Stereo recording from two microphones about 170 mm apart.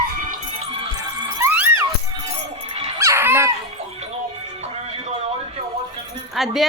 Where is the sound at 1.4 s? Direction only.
10° right (ahead or behind).